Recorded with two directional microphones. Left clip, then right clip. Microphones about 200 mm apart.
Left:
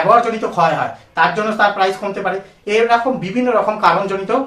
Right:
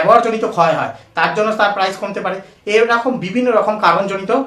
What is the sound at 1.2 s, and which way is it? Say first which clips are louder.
Speech: even; 30° right (ahead or behind).